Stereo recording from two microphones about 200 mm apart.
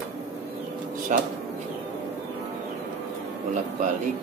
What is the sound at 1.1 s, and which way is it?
Speech, 40° right (ahead or behind).